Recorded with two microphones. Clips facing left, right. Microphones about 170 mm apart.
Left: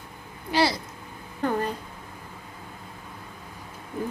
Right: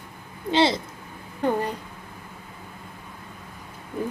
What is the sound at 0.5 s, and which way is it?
Speech, 25° right (ahead or behind).